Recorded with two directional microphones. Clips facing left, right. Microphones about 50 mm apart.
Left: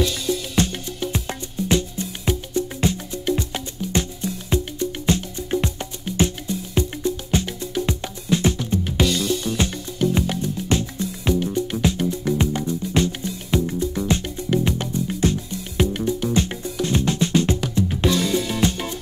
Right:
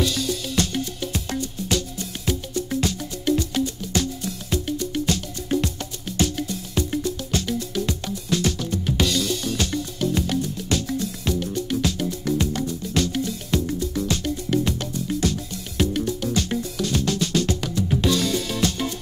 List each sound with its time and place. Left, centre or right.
0.3 s music: left